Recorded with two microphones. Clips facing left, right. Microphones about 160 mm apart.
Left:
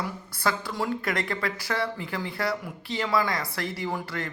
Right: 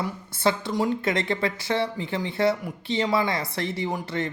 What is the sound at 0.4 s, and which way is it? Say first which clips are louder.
Speech: right 5 dB; 20° right (ahead or behind).